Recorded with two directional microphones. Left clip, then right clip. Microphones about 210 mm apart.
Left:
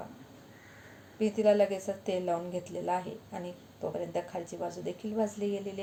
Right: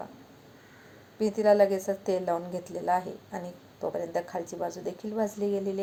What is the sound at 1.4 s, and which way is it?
A woman's voice, 20° right (ahead or behind).